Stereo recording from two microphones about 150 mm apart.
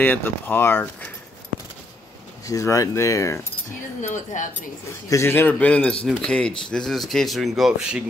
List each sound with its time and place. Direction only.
0.0 s speech: 15° left (ahead or behind)
2.4 s speech: 20° left (ahead or behind)
4.0 s speech: 55° left (ahead or behind)
4.8 s speech: 20° left (ahead or behind); by 8.0 s 5° right (ahead or behind)